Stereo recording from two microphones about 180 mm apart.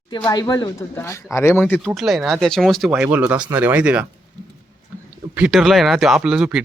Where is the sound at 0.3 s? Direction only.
20° left (ahead or behind).